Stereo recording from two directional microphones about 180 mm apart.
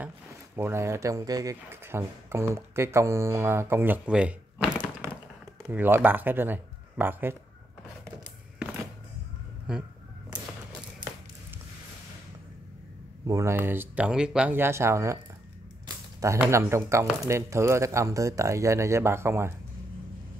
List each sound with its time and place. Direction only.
0.6 s speech: 15° right (ahead or behind)
13.3 s speech: 15° right (ahead or behind)
16.2 s speech: 15° right (ahead or behind)